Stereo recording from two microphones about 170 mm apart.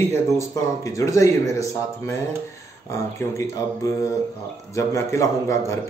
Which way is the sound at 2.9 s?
15° left (ahead or behind).